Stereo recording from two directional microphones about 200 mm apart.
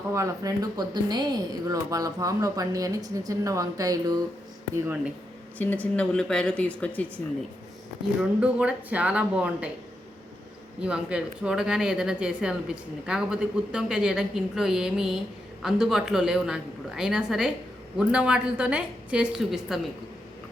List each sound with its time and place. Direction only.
0.1 s speech: 15° right (ahead or behind)
5.5 s speech: 5° left (ahead or behind)
8.2 s speech: 5° right (ahead or behind)
10.8 s speech: 5° right (ahead or behind)